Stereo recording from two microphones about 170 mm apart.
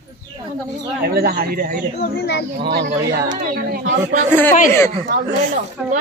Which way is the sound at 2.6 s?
75° right (ahead or behind).